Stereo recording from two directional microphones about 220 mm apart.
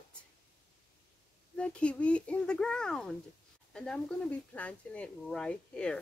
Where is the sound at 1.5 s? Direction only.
5° left (ahead or behind).